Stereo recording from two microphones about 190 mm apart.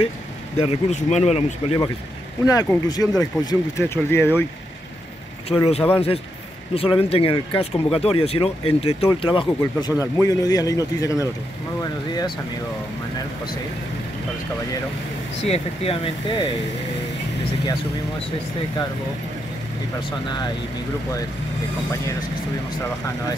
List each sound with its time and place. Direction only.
0.6 s speech: 35° left (ahead or behind)
2.4 s speech: 20° left (ahead or behind)
5.5 s speech: 30° left (ahead or behind)
15.4 s speech: 30° left (ahead or behind)